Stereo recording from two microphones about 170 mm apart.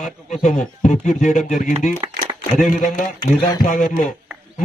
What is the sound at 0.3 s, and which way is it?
A man's voice, 45° left (ahead or behind).